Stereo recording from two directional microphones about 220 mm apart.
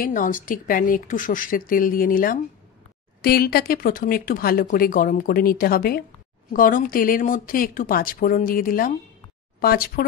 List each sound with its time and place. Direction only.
0.0 s speech: 40° left (ahead or behind)